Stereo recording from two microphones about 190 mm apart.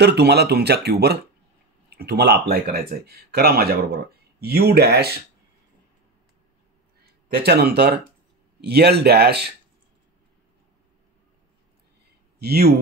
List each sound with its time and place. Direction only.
0.0 s speech: 60° right (ahead or behind)
7.0 s speech: 55° right (ahead or behind)
12.4 s speech: 55° right (ahead or behind)